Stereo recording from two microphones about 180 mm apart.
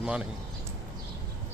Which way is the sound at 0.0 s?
5° right (ahead or behind).